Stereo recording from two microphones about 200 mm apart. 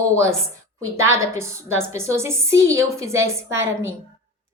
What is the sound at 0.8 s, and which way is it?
Speech, 90° right.